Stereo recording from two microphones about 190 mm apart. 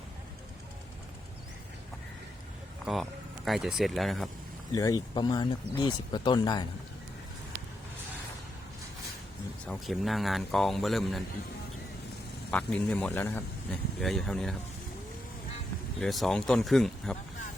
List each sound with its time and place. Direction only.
2.8 s speech: centre (ahead or behind)
4.7 s speech: 15° left (ahead or behind)
9.6 s speech: centre (ahead or behind)
12.5 s speech: 5° left (ahead or behind)
16.0 s speech: centre (ahead or behind)